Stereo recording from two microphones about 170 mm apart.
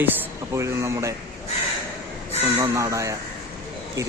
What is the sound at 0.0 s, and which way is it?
Speech, 10° right (ahead or behind).